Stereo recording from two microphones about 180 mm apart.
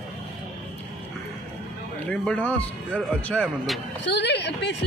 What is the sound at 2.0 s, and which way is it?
Speech, 5° left (ahead or behind).